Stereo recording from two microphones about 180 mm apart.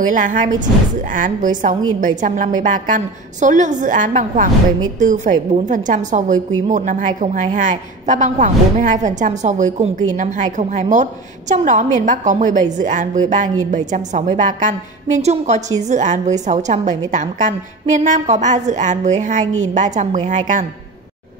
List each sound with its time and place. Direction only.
0.0 s a woman's voice: 45° right (ahead or behind)